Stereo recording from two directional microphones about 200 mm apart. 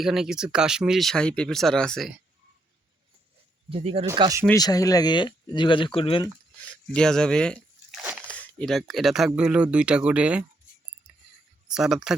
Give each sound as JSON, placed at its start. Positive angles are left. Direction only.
{"t": 0.0, "sound": "speech", "side_deg": 0}
{"t": 3.7, "sound": "speech", "side_deg": -30}
{"t": 4.1, "sound": "speech", "side_deg": -15}
{"t": 4.5, "sound": "speech", "side_deg": 20}
{"t": 6.2, "sound": "a sound", "side_deg": 5}
{"t": 8.3, "sound": "speech", "side_deg": 5}
{"t": 11.7, "sound": "speech", "side_deg": -5}